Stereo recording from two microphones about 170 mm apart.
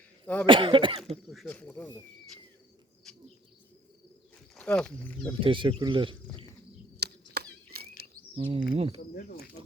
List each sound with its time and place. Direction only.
0.4 s speech: 30° right (ahead or behind)
1.3 s speech: 5° left (ahead or behind)
4.5 s speech: 5° left (ahead or behind)
5.3 s speech: 30° right (ahead or behind)
6.9 s chop: 70° right (ahead or behind)
8.4 s speech: 35° right (ahead or behind)
9.1 s speech: 60° left (ahead or behind)